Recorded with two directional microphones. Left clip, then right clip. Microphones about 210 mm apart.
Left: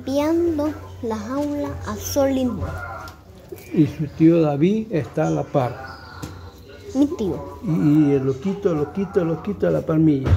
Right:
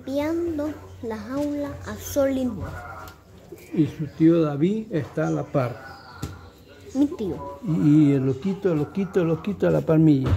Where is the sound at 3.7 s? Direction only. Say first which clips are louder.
Left 4 dB; centre (ahead or behind).